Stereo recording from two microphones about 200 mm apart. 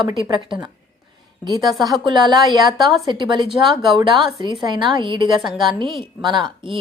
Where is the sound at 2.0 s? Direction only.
20° right (ahead or behind).